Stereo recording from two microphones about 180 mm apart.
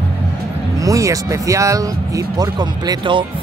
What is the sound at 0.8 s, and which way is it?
Speech, 20° right (ahead or behind).